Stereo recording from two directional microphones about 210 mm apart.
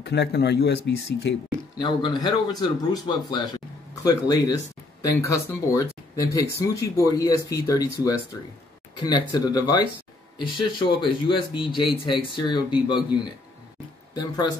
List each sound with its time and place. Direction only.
0.0 s speech: 50° left (ahead or behind)
1.8 s speech: 20° left (ahead or behind)